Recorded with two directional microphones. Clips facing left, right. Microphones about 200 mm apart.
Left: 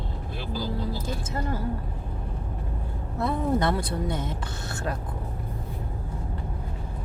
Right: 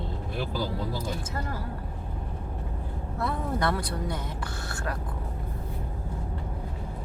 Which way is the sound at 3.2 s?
20° left (ahead or behind).